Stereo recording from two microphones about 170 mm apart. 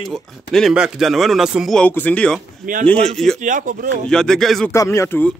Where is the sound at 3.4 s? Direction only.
50° right (ahead or behind).